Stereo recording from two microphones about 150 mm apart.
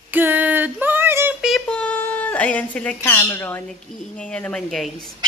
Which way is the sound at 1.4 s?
5° left (ahead or behind).